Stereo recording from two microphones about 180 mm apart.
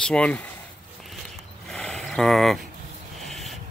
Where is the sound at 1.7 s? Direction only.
5° left (ahead or behind).